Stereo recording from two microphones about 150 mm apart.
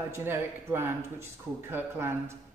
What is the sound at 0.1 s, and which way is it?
Speech, 15° right (ahead or behind).